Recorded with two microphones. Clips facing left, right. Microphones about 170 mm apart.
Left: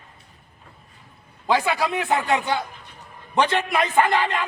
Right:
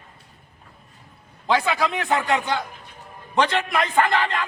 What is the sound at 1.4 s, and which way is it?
A man's voice, 15° left (ahead or behind).